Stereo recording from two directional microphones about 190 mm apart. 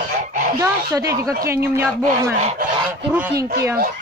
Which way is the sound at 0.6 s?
15° right (ahead or behind).